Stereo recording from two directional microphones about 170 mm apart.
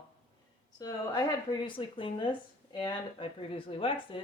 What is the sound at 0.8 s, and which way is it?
Speech, 20° left (ahead or behind).